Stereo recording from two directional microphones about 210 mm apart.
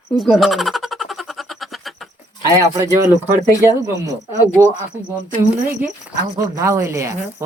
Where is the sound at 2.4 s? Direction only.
15° right (ahead or behind).